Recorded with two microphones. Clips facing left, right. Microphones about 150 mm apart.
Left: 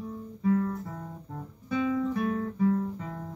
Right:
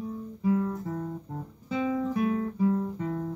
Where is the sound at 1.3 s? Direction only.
25° right (ahead or behind).